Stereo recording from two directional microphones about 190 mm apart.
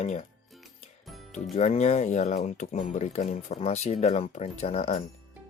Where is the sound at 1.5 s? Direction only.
35° left (ahead or behind).